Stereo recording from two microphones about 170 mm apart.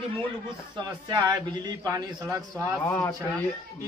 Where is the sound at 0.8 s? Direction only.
25° right (ahead or behind).